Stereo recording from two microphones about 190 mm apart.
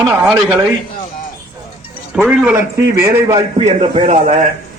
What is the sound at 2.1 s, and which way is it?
Speech, 5° right (ahead or behind).